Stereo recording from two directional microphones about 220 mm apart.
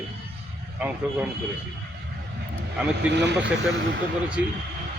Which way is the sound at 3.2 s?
50° right (ahead or behind).